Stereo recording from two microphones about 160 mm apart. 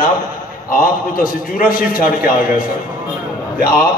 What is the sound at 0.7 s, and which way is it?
A man's voice, 60° left (ahead or behind).